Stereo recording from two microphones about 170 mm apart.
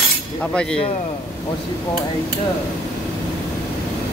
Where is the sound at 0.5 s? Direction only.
5° left (ahead or behind).